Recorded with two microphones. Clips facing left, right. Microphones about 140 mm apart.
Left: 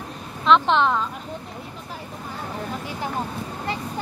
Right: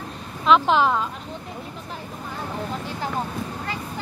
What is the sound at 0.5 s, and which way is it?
Speech, 5° right (ahead or behind).